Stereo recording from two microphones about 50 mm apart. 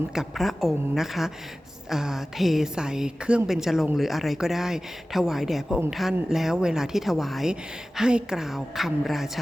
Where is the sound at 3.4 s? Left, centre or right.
Centre.